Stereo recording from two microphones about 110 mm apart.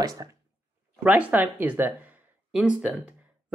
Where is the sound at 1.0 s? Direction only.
10° right (ahead or behind).